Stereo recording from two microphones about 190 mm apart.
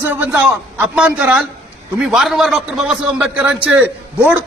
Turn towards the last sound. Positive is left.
turn(degrees=-5)  # may be behind; listen again after turning